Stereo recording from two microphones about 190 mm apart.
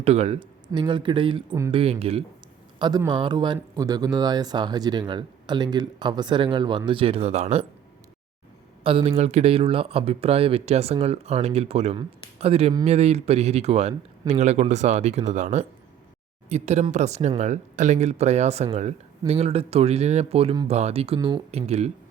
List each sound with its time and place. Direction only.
0.0 s speech: 35° right (ahead or behind)
8.8 s speech: 30° right (ahead or behind)